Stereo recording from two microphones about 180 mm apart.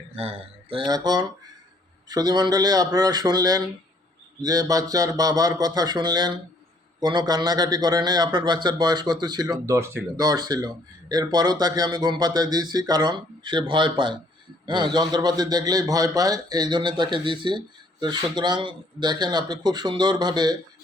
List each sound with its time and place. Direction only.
0.2 s a man's voice: 35° right (ahead or behind)